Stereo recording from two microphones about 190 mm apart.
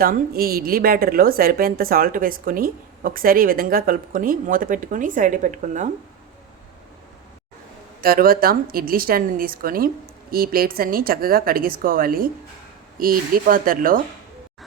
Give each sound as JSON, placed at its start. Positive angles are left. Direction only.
{"t": 0.0, "sound": "a woman's voice", "side_deg": -50}
{"t": 8.0, "sound": "a woman's voice", "side_deg": -50}